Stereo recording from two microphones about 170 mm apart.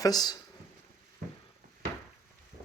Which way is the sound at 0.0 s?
25° left (ahead or behind).